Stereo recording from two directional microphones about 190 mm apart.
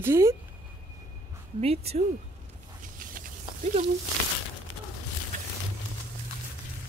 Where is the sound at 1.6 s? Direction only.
30° right (ahead or behind).